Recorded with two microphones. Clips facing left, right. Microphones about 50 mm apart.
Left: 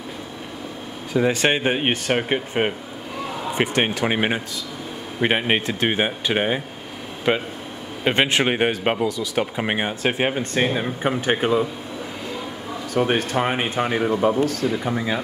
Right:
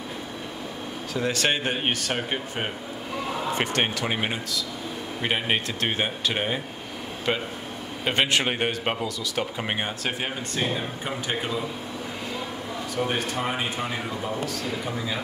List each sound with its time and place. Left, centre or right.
1.1 s speech: centre
10.1 s speech: left
12.9 s speech: left
14.9 s speech: left